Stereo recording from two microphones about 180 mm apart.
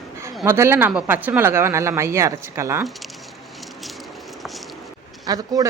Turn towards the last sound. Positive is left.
turn(degrees=-20)  # may be behind; listen again after turning